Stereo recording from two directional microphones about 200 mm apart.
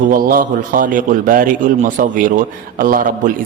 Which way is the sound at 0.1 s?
45° right (ahead or behind).